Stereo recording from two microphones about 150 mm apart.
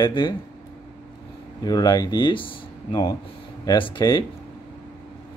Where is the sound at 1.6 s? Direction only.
25° left (ahead or behind).